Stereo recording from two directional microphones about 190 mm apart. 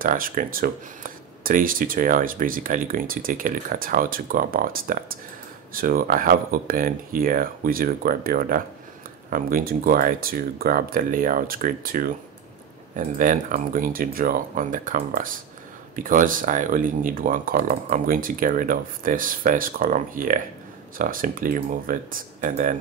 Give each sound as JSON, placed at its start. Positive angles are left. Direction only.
{"t": 0.0, "sound": "speech", "side_deg": -45}